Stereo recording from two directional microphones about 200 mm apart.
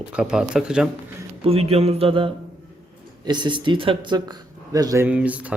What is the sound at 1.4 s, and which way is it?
Speech, 30° right (ahead or behind).